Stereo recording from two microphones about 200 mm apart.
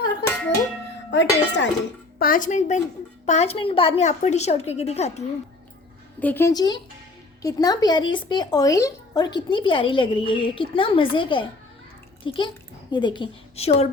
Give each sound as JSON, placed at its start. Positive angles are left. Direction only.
{"t": 1.1, "sound": "speech", "side_deg": 65}
{"t": 2.1, "sound": "a woman's voice", "side_deg": 45}
{"t": 6.1, "sound": "a woman's voice", "side_deg": 10}